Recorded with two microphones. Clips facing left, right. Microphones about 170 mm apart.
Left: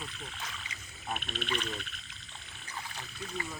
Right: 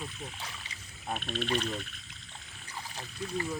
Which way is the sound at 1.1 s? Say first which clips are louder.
Right 4 dB; 35° right (ahead or behind).